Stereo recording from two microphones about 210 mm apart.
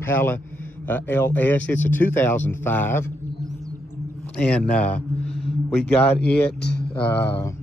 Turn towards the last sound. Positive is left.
turn(degrees=10)  # may be behind; listen again after turning